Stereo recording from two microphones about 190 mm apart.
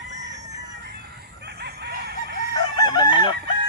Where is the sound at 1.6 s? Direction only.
60° right (ahead or behind).